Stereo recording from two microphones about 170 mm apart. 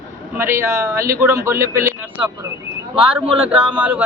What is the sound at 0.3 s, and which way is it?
A man's voice, 15° right (ahead or behind).